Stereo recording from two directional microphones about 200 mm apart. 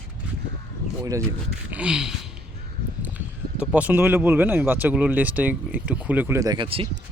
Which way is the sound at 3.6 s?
5° right (ahead or behind).